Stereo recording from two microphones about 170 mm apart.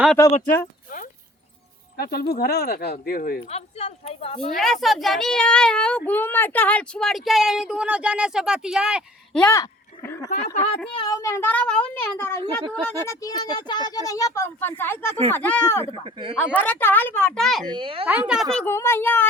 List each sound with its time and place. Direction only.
0.3 s speech: 55° left (ahead or behind)
2.0 s speech: 65° left (ahead or behind)
3.5 s speech: 35° left (ahead or behind)
4.5 s speech: centre (ahead or behind)
9.4 s speech: 15° left (ahead or behind)
10.3 s speech: 40° left (ahead or behind)
10.8 s speech: 25° left (ahead or behind)
16.0 s speech: 30° right (ahead or behind)
16.4 s speech: 10° left (ahead or behind)
17.7 s a child's voice: 30° right (ahead or behind)
18.0 s speech: 5° right (ahead or behind)
18.7 s speech: 15° left (ahead or behind)